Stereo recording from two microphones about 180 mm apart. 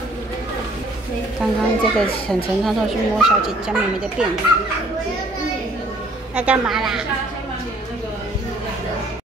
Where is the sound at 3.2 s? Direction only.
5° right (ahead or behind).